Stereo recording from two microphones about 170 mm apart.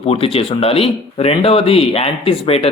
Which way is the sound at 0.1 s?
35° left (ahead or behind).